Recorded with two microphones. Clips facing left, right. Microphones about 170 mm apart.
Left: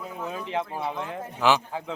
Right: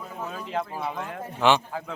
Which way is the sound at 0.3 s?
Centre (ahead or behind).